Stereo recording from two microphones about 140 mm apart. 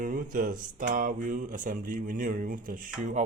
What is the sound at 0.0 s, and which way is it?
A man's voice, 75° right (ahead or behind).